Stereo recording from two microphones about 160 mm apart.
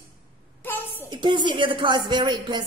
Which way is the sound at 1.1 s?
30° right (ahead or behind).